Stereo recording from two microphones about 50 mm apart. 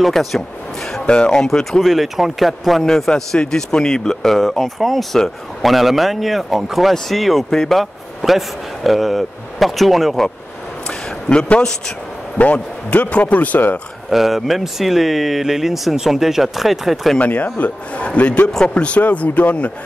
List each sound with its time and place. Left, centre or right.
0.0 s speech: centre
1.0 s speech: centre
1.8 s speech: centre
7.8 s speech: centre
11.2 s speech: left
14.1 s speech: centre
17.2 s speech: left